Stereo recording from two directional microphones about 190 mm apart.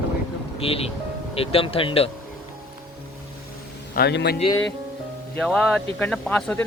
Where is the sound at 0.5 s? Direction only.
30° left (ahead or behind).